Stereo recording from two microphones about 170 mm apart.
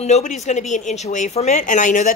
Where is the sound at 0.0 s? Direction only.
45° left (ahead or behind).